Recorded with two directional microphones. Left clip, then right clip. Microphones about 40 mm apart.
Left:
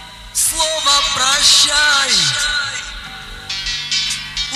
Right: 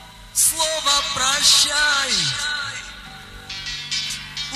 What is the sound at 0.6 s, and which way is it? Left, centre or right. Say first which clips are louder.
Music: left 6 dB; right.